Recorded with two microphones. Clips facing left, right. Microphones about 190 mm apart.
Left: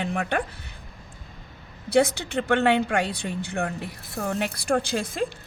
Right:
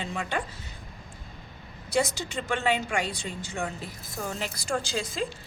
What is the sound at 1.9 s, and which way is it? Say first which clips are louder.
Speech: left 6 dB; 60° left (ahead or behind).